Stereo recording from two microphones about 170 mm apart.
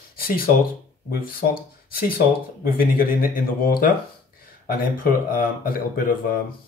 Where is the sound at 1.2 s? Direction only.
55° left (ahead or behind).